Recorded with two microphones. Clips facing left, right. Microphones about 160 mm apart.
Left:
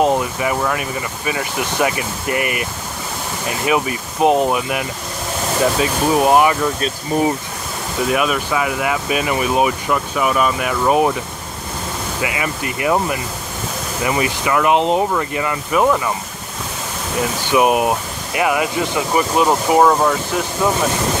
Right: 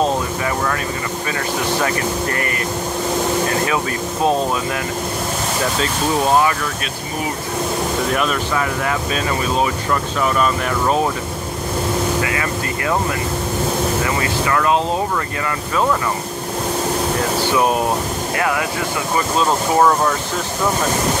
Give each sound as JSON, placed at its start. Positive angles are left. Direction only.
{"t": 0.0, "sound": "speech", "side_deg": 15}
{"t": 3.6, "sound": "speech", "side_deg": 15}
{"t": 8.1, "sound": "speech", "side_deg": 5}
{"t": 12.2, "sound": "speech", "side_deg": 15}
{"t": 17.5, "sound": "speech", "side_deg": 15}